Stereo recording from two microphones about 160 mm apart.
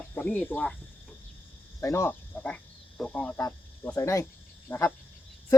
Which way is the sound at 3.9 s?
20° left (ahead or behind).